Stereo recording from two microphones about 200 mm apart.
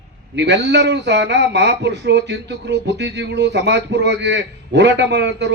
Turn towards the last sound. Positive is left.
turn(degrees=-60)  # may be behind; listen again after turning